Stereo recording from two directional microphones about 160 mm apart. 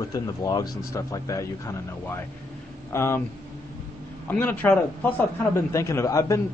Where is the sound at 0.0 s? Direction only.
25° left (ahead or behind).